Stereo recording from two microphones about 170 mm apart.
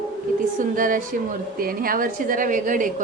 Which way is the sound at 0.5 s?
50° right (ahead or behind).